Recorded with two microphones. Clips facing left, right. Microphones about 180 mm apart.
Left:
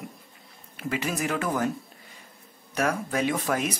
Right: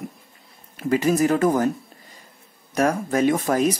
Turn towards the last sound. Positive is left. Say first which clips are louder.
# right 7 dB
turn(degrees=-40)  # may be behind; listen again after turning